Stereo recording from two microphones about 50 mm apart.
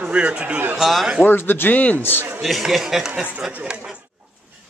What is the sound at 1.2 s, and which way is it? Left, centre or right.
A man's voice, left.